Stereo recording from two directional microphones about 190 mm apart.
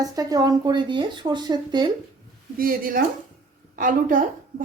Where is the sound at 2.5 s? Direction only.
50° right (ahead or behind).